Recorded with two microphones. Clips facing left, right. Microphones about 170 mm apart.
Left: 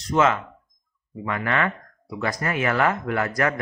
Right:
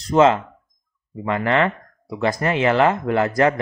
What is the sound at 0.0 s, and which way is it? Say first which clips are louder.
Speech: right 6 dB; 30° right (ahead or behind).